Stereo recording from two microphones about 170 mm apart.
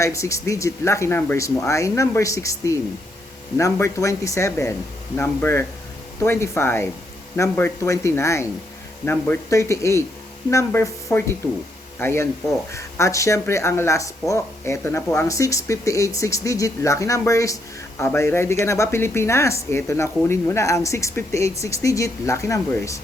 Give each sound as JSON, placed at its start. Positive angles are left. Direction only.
{"t": 0.0, "sound": "speech", "side_deg": 20}